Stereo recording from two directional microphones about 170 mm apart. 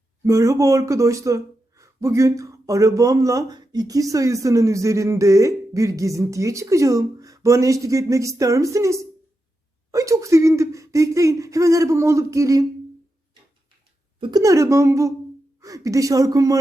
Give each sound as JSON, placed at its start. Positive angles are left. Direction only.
{"t": 0.3, "sound": "speech", "side_deg": -20}
{"t": 14.2, "sound": "speech", "side_deg": -25}